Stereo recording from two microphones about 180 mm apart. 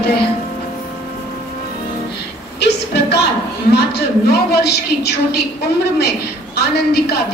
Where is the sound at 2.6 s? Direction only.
65° left (ahead or behind).